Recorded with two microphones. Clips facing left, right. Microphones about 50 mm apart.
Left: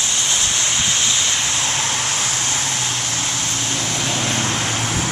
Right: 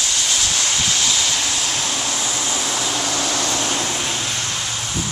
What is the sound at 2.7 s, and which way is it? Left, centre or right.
Vehicle, right.